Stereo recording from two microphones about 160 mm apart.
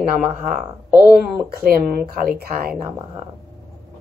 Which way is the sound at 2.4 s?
70° right (ahead or behind).